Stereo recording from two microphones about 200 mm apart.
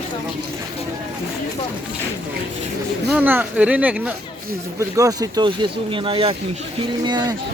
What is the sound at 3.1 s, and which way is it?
Speech, 10° right (ahead or behind).